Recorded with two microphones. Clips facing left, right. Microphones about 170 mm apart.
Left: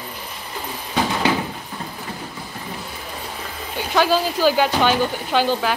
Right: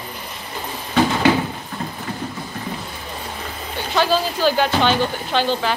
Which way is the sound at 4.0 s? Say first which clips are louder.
Left 1 dB; 5° left (ahead or behind).